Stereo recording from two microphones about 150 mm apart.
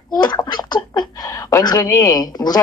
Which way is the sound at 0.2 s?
30° left (ahead or behind).